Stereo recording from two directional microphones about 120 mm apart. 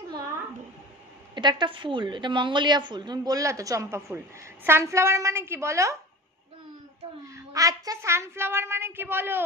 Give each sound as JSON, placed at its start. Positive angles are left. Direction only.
{"t": 1.3, "sound": "a woman's voice", "side_deg": -40}
{"t": 4.6, "sound": "child singing", "side_deg": -20}
{"t": 7.3, "sound": "child singing", "side_deg": -30}